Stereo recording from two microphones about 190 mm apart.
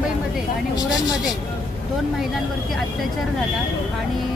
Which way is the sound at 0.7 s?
20° left (ahead or behind).